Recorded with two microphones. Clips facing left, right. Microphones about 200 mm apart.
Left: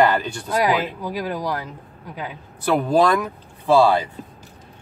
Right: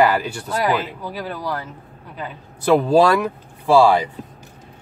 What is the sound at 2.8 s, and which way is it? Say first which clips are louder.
Speech: right 3 dB; 10° right (ahead or behind).